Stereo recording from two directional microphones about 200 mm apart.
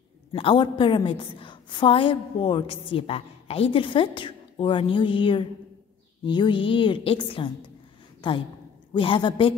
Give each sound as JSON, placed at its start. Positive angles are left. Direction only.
{"t": 0.3, "sound": "a woman's voice", "side_deg": 25}